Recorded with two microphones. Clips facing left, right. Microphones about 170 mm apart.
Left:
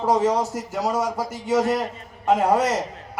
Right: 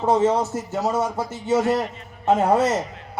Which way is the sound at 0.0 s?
25° right (ahead or behind).